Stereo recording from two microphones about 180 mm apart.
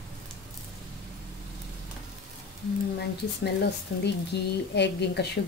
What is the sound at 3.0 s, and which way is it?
Speech, 65° left (ahead or behind).